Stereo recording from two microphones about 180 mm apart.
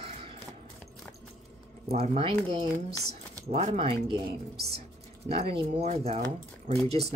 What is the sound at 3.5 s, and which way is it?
Speech, 30° right (ahead or behind).